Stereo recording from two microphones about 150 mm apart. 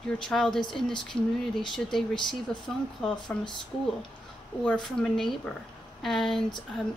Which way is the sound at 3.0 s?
5° left (ahead or behind).